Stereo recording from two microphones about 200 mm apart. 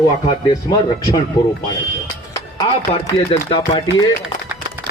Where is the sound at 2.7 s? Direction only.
30° left (ahead or behind).